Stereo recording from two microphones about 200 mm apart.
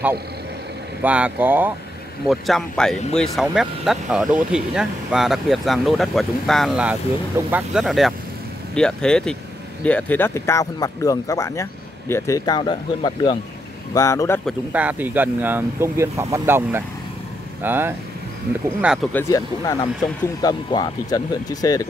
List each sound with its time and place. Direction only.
1.0 s speech: 5° right (ahead or behind); by 14.4 s 15° left (ahead or behind)
14.4 s speech: 10° right (ahead or behind)
19.1 s speech: 15° left (ahead or behind)